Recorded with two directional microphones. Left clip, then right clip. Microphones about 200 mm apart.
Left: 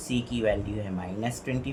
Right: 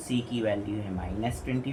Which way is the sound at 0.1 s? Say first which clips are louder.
Left 2 dB; 40° left (ahead or behind).